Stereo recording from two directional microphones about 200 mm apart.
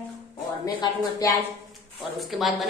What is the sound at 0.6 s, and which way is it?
Speech, 15° left (ahead or behind).